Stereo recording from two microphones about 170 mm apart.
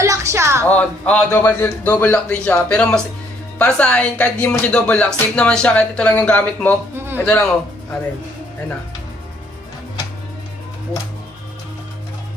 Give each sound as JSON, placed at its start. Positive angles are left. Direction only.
{"t": 0.0, "sound": "a woman's voice", "side_deg": -15}
{"t": 0.7, "sound": "speech", "side_deg": 10}